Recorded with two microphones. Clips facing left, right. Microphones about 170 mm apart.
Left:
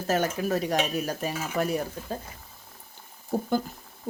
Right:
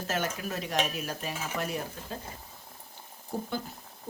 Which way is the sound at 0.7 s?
40° left (ahead or behind).